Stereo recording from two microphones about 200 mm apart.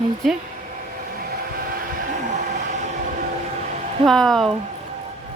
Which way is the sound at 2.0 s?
40° right (ahead or behind).